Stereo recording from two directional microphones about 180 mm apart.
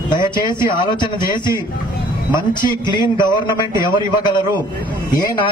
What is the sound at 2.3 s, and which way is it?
A man's voice, 25° left (ahead or behind).